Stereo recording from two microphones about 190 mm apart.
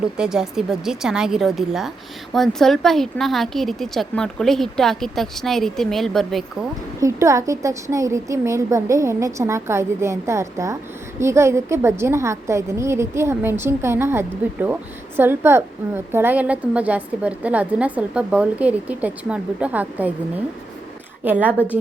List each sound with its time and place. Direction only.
0.2 s a woman's voice: 5° right (ahead or behind)
7.0 s a woman's voice: 15° right (ahead or behind)